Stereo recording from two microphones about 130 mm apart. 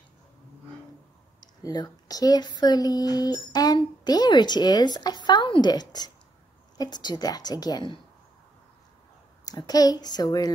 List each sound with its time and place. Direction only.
1.6 s speech: 30° left (ahead or behind)
9.4 s speech: 30° left (ahead or behind)